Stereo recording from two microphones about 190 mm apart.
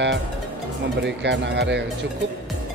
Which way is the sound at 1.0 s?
65° right (ahead or behind).